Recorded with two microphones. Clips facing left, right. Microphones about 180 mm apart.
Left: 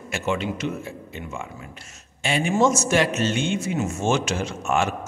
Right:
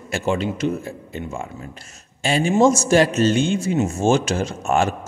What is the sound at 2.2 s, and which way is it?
A man's voice, 35° right (ahead or behind).